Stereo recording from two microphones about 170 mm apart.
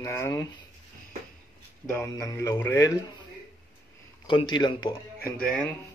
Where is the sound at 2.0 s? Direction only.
15° left (ahead or behind).